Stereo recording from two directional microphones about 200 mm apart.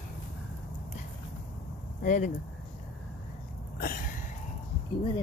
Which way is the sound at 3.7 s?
45° left (ahead or behind).